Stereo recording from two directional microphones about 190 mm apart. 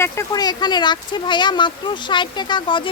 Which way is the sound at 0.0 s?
15° left (ahead or behind).